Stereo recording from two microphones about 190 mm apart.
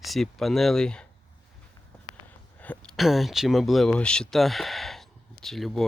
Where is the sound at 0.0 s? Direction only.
Centre (ahead or behind).